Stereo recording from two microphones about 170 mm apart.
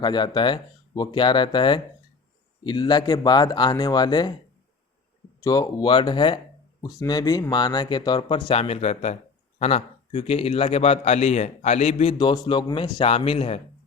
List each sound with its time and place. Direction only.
0.0 s speech: 25° left (ahead or behind)
5.4 s a man's voice: 20° left (ahead or behind); by 12.1 s 35° left (ahead or behind)
12.1 s a man's voice: 25° left (ahead or behind)